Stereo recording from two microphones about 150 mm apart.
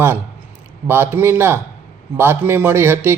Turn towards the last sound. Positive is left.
turn(degrees=-15)  # may be behind; listen again after turning